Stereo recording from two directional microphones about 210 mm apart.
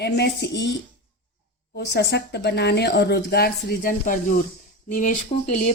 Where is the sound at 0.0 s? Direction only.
55° left (ahead or behind).